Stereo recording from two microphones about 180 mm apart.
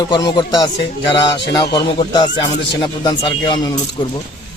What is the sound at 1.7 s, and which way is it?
Speech, 20° left (ahead or behind).